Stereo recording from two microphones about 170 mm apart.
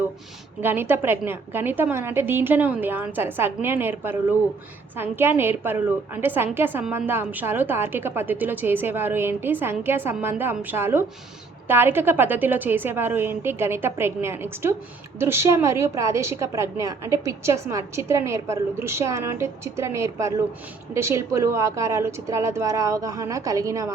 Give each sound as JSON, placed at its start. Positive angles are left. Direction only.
{"t": 0.6, "sound": "a woman's voice", "side_deg": -10}